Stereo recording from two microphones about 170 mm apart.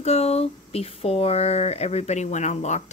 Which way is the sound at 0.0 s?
40° left (ahead or behind).